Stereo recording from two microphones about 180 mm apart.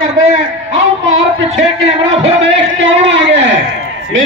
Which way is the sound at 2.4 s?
90° right.